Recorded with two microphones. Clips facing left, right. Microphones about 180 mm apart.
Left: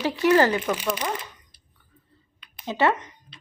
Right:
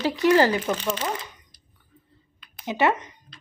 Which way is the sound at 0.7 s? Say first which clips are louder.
Even; 10° left (ahead or behind).